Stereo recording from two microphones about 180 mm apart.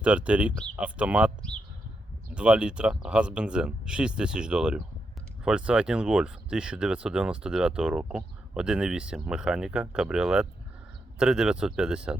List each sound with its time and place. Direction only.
0.0 s speech: 5° right (ahead or behind)
2.3 s speech: 5° right (ahead or behind)